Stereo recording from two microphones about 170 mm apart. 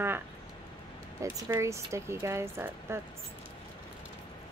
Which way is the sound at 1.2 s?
20° right (ahead or behind).